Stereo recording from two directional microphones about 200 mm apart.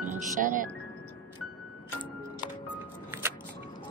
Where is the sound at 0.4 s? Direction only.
40° right (ahead or behind).